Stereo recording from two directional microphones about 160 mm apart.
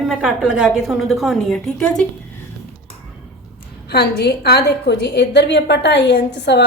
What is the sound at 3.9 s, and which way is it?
A woman's voice, 80° left.